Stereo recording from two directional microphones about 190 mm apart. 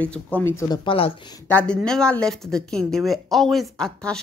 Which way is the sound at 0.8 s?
30° left (ahead or behind).